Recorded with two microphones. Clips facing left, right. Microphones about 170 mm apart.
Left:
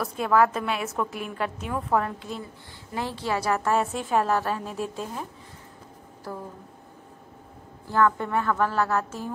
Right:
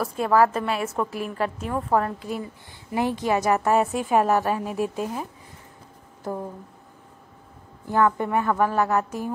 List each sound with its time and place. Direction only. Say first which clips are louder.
0.0 s a woman's voice: right 2 dB; centre (ahead or behind)
6.3 s speech: right 6 dB; 20° right (ahead or behind)
7.8 s a woman's voice: right 2 dB; 15° right (ahead or behind)